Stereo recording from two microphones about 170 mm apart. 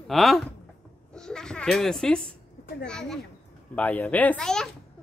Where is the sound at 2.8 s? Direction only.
5° left (ahead or behind).